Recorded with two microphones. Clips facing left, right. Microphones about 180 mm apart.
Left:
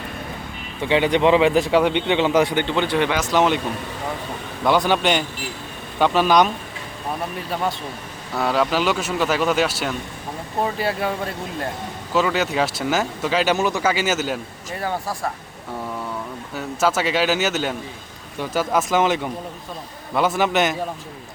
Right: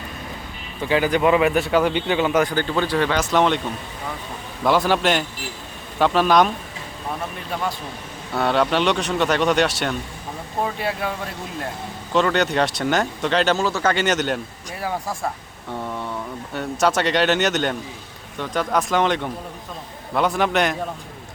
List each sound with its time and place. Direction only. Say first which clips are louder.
0.9 s speech: left 1 dB; 25° left (ahead or behind)
3.2 s a man's voice: right 1 dB; centre (ahead or behind)
4.6 s a man's voice: even; centre (ahead or behind)
8.3 s a man's voice: right 1 dB; centre (ahead or behind)
12.1 s a man's voice: right 1 dB; 5° left (ahead or behind)
16.6 s a man's voice: right 1 dB; 5° left (ahead or behind)